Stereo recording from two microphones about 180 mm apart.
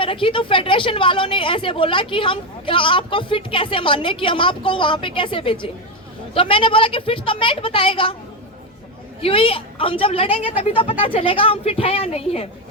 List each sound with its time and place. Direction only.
0.0 s speech: 30° left (ahead or behind)
9.2 s a woman's voice: 30° left (ahead or behind)